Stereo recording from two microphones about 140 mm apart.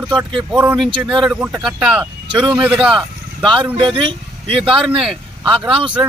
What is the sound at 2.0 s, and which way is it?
Speech, 30° right (ahead or behind).